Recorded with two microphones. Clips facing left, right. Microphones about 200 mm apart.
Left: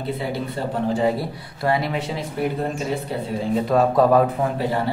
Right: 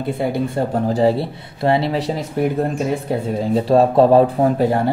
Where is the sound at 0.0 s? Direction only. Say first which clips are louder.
Right 5 dB; 50° right (ahead or behind).